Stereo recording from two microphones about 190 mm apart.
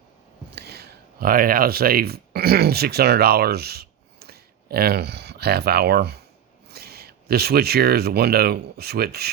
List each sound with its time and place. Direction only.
0.5 s speech: 55° right (ahead or behind)